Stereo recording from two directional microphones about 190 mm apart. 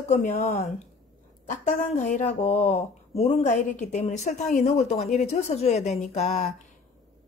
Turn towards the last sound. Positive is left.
turn(degrees=35)  # may be behind; listen again after turning